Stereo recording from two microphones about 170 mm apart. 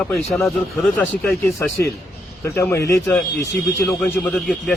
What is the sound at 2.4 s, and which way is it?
A man's voice, 15° left (ahead or behind).